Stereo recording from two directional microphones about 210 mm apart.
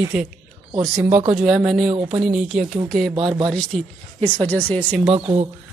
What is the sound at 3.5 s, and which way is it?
Speech, 5° left (ahead or behind).